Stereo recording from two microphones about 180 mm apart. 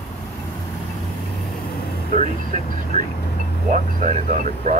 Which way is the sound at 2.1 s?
45° right (ahead or behind).